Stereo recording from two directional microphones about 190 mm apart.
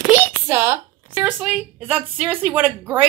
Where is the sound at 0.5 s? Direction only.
10° right (ahead or behind).